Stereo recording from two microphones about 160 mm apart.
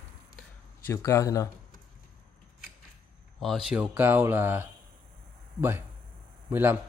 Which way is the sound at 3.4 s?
Centre (ahead or behind).